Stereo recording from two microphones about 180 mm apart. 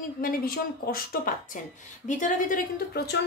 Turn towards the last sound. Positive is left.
turn(degrees=45)  # may be behind; listen again after turning